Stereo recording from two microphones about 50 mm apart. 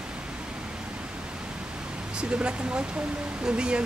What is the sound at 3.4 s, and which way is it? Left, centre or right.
Speech, right.